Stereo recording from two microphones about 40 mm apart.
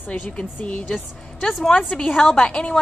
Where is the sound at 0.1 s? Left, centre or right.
Left.